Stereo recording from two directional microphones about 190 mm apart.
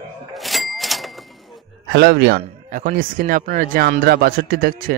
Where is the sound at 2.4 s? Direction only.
40° right (ahead or behind).